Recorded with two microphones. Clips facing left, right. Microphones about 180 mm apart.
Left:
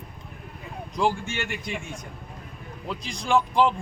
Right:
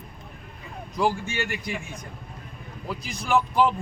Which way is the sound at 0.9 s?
5° right (ahead or behind).